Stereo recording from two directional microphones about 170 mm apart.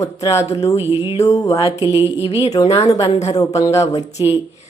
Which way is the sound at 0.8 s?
15° right (ahead or behind).